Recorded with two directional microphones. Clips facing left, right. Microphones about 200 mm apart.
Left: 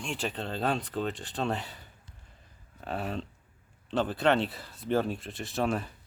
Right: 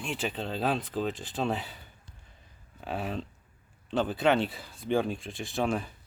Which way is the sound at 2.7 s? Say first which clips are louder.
Even; centre (ahead or behind).